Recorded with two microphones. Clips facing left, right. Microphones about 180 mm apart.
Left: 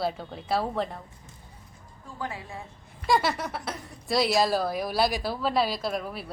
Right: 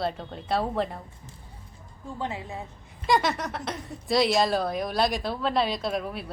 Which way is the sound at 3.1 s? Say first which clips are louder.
Right 1 dB; centre (ahead or behind).